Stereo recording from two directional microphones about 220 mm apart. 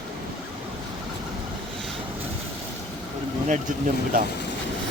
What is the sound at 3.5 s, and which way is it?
Speech, 35° right (ahead or behind).